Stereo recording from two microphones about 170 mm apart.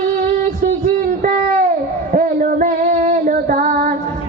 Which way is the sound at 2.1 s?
50° right (ahead or behind).